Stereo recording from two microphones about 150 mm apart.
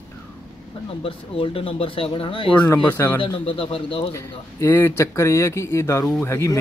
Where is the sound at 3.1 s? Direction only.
35° left (ahead or behind).